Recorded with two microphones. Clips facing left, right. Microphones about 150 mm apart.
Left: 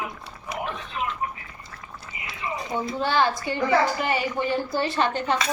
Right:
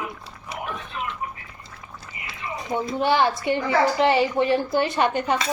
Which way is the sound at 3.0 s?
20° right (ahead or behind).